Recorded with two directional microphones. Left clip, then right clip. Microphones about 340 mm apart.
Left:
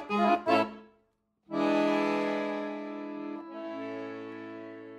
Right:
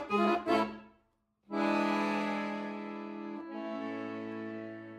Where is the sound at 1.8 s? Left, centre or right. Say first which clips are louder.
Left 4 dB; left.